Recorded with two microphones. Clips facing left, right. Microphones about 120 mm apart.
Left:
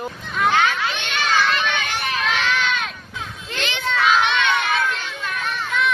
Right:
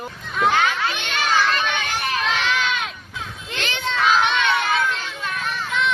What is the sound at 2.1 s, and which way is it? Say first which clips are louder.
Run: left 1 dB; 20° right (ahead or behind).